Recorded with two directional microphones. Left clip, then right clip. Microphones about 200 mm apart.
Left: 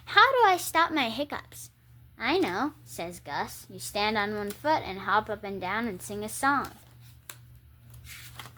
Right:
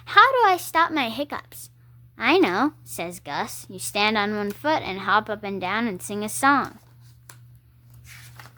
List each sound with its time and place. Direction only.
0.0 s a woman's voice: 25° right (ahead or behind); by 6.7 s 40° right (ahead or behind)